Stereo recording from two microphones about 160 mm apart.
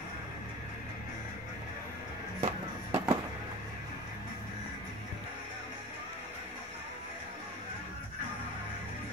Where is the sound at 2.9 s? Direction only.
30° right (ahead or behind).